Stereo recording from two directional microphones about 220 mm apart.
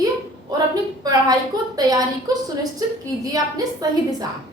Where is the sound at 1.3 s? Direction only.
15° right (ahead or behind).